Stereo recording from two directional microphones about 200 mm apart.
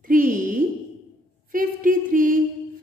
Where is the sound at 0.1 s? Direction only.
45° right (ahead or behind).